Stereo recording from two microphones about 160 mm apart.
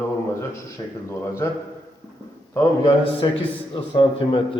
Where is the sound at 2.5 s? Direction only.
20° left (ahead or behind).